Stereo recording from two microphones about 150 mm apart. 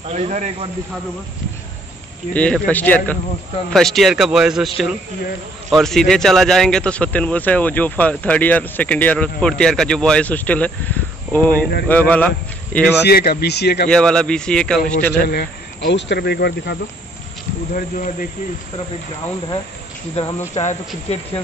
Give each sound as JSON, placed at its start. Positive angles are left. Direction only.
{"t": 0.0, "sound": "speech", "side_deg": -45}
{"t": 2.3, "sound": "a man's voice", "side_deg": 10}
{"t": 13.0, "sound": "speech", "side_deg": 90}
{"t": 13.8, "sound": "a man's voice", "side_deg": 5}
{"t": 15.2, "sound": "speech", "side_deg": 90}
{"t": 17.7, "sound": "speech", "side_deg": 60}
{"t": 20.2, "sound": "speech", "side_deg": 45}